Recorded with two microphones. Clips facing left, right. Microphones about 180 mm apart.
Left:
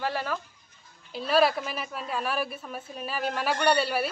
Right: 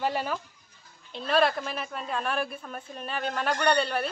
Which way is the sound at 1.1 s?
5° left (ahead or behind).